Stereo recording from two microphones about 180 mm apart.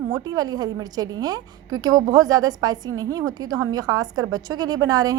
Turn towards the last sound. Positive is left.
turn(degrees=-20)  # may be behind; listen again after turning